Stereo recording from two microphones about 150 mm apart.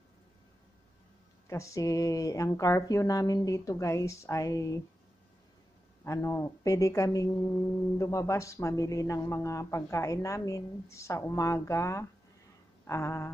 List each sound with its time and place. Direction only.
1.5 s speech: 20° left (ahead or behind)
6.0 s speech: 20° left (ahead or behind)
12.8 s a sound: 20° left (ahead or behind)